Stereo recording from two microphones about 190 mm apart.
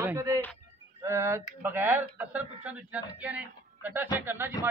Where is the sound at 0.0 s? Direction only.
15° right (ahead or behind).